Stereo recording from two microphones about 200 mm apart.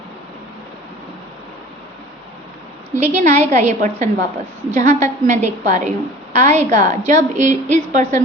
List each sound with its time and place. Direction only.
3.0 s a woman's voice: 35° right (ahead or behind)